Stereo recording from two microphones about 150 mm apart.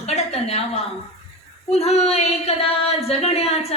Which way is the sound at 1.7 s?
45° left (ahead or behind).